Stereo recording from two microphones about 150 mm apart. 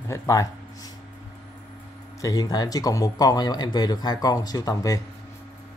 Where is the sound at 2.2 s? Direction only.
25° left (ahead or behind).